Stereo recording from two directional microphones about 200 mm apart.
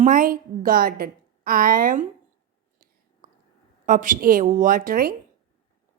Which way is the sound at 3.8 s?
40° right (ahead or behind).